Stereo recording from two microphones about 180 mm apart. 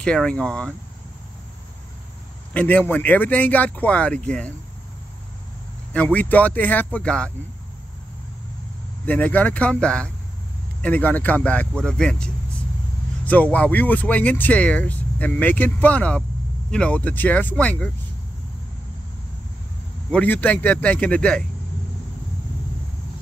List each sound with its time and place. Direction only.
0.0 s speech: 5° left (ahead or behind)
2.5 s speech: 10° left (ahead or behind)
5.9 s speech: 10° left (ahead or behind)
9.0 s speech: 10° left (ahead or behind)
20.1 s speech: 10° left (ahead or behind)